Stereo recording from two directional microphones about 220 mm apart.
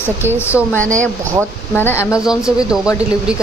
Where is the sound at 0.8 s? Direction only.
35° right (ahead or behind).